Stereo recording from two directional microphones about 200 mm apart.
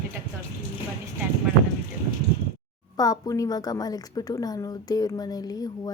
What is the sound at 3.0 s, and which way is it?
A woman's voice, 20° left (ahead or behind).